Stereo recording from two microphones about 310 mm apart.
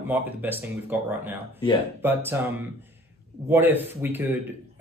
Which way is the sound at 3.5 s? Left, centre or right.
Centre.